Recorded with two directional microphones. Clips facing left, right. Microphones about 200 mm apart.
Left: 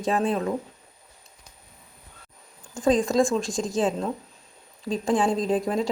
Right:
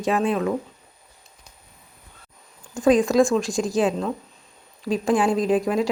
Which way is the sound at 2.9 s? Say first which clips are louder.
Right 4 dB; 25° left (ahead or behind).